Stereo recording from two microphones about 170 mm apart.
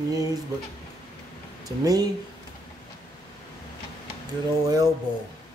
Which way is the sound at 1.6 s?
20° right (ahead or behind).